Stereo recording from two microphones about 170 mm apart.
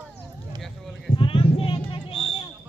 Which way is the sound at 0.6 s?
Centre (ahead or behind).